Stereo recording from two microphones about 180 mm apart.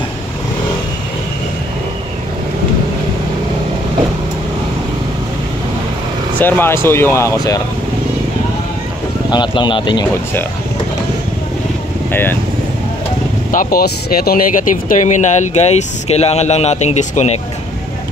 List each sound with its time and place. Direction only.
6.4 s speech: 10° left (ahead or behind)
9.3 s speech: 25° left (ahead or behind)
12.1 s speech: 10° left (ahead or behind)
13.5 s speech: 50° left (ahead or behind)